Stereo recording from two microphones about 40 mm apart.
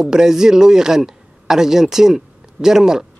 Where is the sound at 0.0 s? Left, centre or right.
Centre.